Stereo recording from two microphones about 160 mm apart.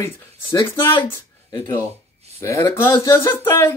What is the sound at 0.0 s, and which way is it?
Speech, 20° left (ahead or behind).